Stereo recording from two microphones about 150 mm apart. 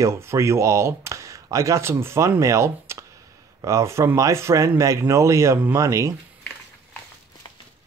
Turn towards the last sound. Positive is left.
turn(degrees=-20)  # may be behind; listen again after turning